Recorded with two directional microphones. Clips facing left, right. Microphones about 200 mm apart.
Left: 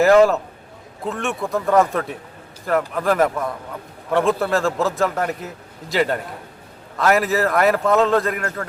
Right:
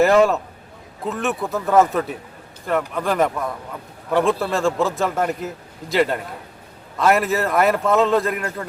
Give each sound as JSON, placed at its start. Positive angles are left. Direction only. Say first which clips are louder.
{"t": 0.0, "sound": "a man's voice", "louder": "left 2 dB", "side_deg": 0}